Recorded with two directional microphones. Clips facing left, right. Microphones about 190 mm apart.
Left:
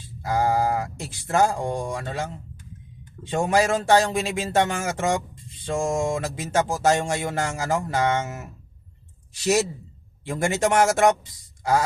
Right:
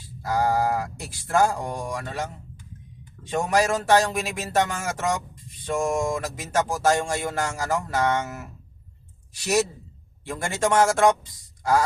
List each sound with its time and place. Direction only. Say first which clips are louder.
0.0 s speech: left 1 dB; 20° left (ahead or behind)
3.3 s a woman's voice: left 1 dB; 25° left (ahead or behind)
11.6 s a sound: even; 20° left (ahead or behind)